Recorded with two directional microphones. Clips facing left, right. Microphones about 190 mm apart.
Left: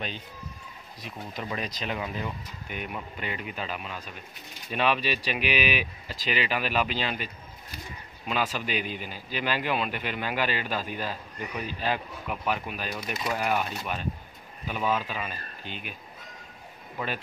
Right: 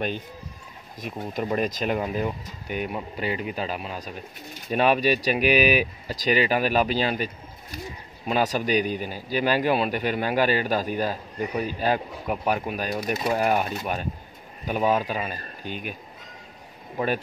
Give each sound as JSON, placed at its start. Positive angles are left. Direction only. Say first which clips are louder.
{"t": 1.3, "sound": "a man's voice", "louder": "right 9 dB", "side_deg": -50}
{"t": 8.3, "sound": "a man's voice", "louder": "right 6 dB", "side_deg": -40}